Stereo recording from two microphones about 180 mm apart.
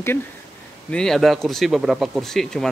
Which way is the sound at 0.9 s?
5° left (ahead or behind).